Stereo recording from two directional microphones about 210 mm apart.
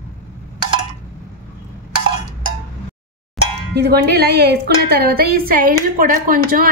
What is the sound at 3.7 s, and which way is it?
A woman's voice, 50° right (ahead or behind).